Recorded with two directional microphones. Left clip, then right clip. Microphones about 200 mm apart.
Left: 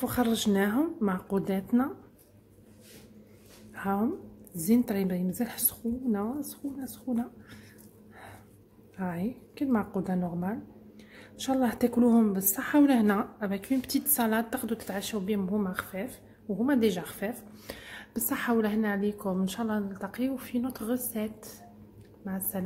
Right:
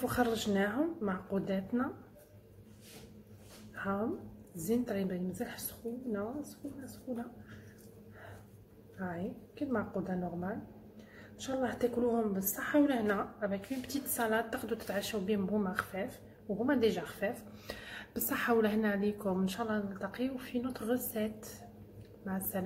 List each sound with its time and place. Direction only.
0.0 s a woman's voice: 35° left (ahead or behind)
3.7 s a sound: 50° left (ahead or behind)
4.6 s a woman's voice: 50° left (ahead or behind)
8.9 s a woman's voice: 55° left (ahead or behind); by 22.6 s 25° left (ahead or behind)